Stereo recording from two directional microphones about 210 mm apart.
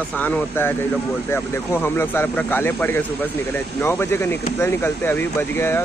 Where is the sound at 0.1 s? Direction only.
5° left (ahead or behind).